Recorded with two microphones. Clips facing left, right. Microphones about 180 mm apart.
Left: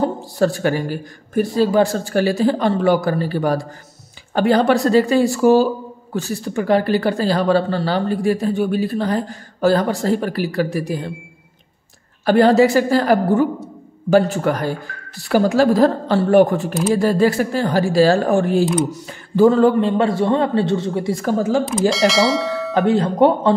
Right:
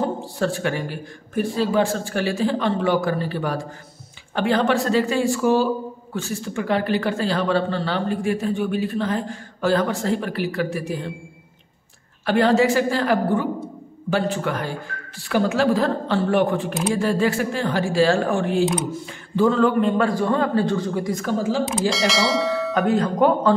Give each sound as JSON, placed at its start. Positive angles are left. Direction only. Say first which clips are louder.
{"t": 0.0, "sound": "a man's voice", "louder": "left 5 dB", "side_deg": 40}
{"t": 12.3, "sound": "a man's voice", "louder": "left 5 dB", "side_deg": 40}
{"t": 21.6, "sound": "speech", "louder": "left 5 dB", "side_deg": 0}
{"t": 22.8, "sound": "speech", "louder": "left 5 dB", "side_deg": 30}